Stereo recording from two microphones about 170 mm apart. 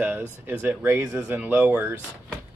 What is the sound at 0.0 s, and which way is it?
Speech, 10° right (ahead or behind).